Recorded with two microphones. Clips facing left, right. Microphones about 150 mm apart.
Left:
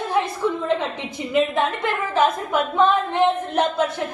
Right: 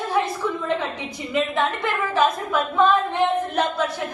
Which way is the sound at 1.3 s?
20° left (ahead or behind).